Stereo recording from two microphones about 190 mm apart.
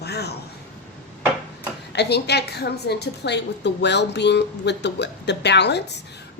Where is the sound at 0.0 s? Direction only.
60° left (ahead or behind).